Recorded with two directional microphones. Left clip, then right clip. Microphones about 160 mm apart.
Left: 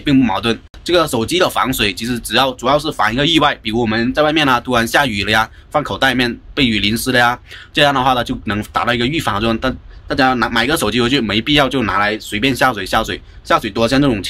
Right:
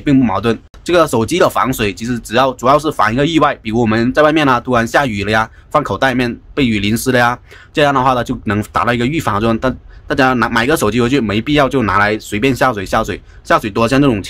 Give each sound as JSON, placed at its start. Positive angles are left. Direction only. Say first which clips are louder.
{"t": 0.0, "sound": "speech", "louder": "right 1 dB", "side_deg": -35}
{"t": 3.7, "sound": "speech", "louder": "right 3 dB", "side_deg": -45}